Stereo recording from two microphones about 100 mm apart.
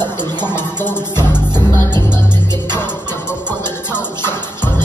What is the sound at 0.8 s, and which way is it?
Music, 20° left (ahead or behind).